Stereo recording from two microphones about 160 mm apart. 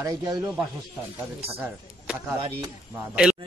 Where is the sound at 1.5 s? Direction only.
5° right (ahead or behind).